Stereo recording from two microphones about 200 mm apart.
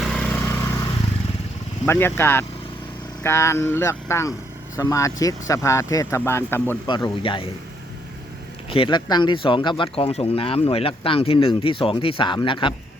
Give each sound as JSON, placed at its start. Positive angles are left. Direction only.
{"t": 0.0, "sound": "vehicle", "side_deg": 5}
{"t": 1.9, "sound": "speech", "side_deg": 10}
{"t": 6.8, "sound": "speech", "side_deg": 25}
{"t": 8.7, "sound": "speech", "side_deg": 25}